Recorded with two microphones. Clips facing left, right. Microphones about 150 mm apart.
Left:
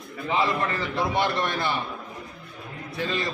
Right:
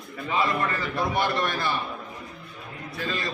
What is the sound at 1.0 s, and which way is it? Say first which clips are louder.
Speech: left 1 dB; 20° left (ahead or behind).